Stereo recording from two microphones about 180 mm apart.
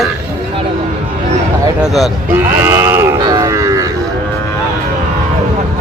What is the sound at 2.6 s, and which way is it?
Livestock, 15° right (ahead or behind).